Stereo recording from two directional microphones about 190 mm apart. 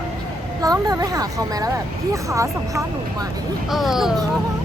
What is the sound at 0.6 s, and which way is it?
Speech, 20° right (ahead or behind).